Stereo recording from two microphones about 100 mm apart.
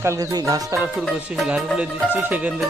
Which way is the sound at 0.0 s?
35° right (ahead or behind).